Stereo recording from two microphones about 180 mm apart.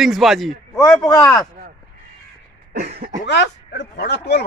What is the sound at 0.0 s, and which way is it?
Speech, centre (ahead or behind).